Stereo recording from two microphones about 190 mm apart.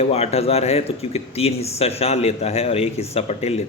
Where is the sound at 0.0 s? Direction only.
30° left (ahead or behind).